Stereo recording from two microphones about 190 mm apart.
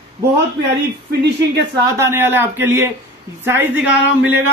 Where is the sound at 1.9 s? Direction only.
15° right (ahead or behind).